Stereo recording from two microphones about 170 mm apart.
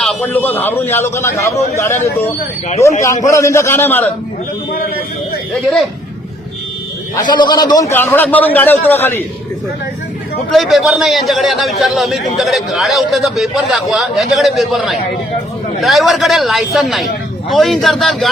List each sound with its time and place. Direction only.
0.0 s a man's voice: 5° left (ahead or behind)
5.6 s a man's voice: centre (ahead or behind)
7.2 s a man's voice: 25° left (ahead or behind)
7.9 s a man's voice: 10° left (ahead or behind)
10.5 s a man's voice: centre (ahead or behind)